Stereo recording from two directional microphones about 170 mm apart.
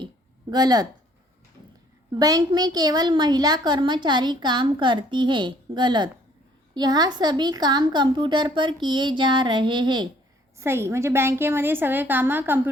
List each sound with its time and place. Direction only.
0.5 s a woman's voice: 25° right (ahead or behind)
2.1 s a woman's voice: 25° right (ahead or behind)
10.6 s a woman's voice: 15° right (ahead or behind)